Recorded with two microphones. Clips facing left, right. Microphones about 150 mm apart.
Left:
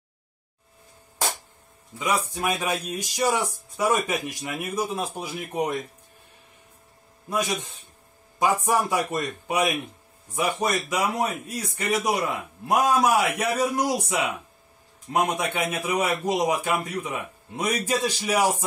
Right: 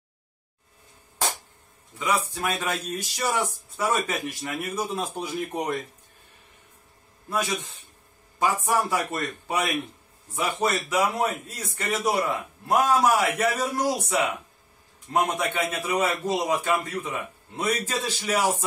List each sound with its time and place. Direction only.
2.0 s speech: 15° left (ahead or behind)
7.2 s speech: 15° left (ahead or behind)
15.3 s speech: 15° left (ahead or behind)